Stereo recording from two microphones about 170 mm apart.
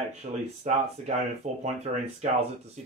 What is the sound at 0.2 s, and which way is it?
Speech, 45° right (ahead or behind).